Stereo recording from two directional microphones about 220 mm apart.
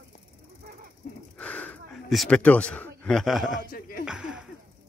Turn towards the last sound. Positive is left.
turn(degrees=-5)  # may be behind; listen again after turning